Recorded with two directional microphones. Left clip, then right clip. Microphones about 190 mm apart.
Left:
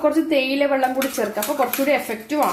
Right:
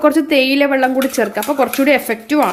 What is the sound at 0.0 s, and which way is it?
Speech, 50° right (ahead or behind).